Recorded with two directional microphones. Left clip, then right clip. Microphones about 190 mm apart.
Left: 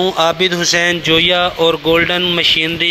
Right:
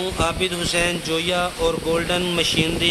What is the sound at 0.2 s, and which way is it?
Speech, 30° left (ahead or behind).